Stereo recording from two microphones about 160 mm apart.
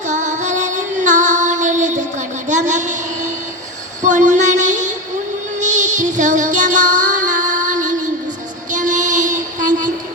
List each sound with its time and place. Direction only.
0.1 s music: 50° right (ahead or behind)